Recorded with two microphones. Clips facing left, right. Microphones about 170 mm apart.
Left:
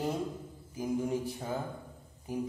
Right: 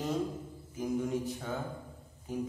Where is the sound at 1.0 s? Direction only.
30° left (ahead or behind).